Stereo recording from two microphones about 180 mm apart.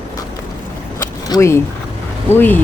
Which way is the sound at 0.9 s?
15° left (ahead or behind).